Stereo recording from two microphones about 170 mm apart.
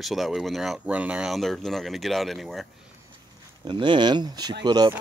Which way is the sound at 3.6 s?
25° right (ahead or behind).